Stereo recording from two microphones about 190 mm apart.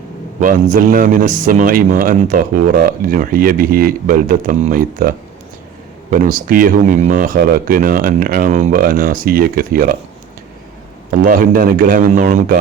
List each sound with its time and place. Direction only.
0.3 s a man's voice: 45° right (ahead or behind)
11.2 s a man's voice: 45° right (ahead or behind)